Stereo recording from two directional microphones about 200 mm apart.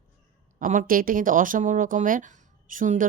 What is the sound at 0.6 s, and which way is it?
Speech, 40° right (ahead or behind).